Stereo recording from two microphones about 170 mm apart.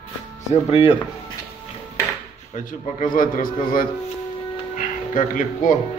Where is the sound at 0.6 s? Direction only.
35° left (ahead or behind).